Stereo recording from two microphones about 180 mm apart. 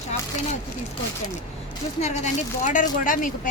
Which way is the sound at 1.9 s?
40° left (ahead or behind).